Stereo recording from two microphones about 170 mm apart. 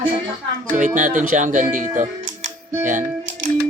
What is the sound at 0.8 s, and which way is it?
Speech, 50° right (ahead or behind).